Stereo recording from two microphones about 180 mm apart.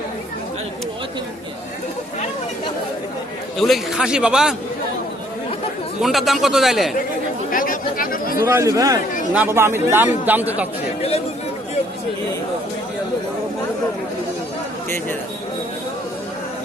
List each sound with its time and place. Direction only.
3.6 s a man's voice: centre (ahead or behind)
6.0 s a man's voice: centre (ahead or behind)
7.5 s speech: 50° left (ahead or behind)
8.4 s speech: 15° right (ahead or behind)